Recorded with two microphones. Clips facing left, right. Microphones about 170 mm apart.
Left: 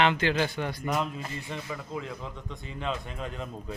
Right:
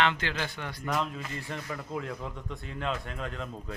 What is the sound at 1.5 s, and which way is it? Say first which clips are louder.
A man's voice: right 1 dB; centre (ahead or behind).